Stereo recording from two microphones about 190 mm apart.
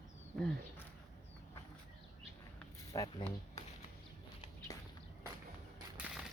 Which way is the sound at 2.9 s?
15° left (ahead or behind).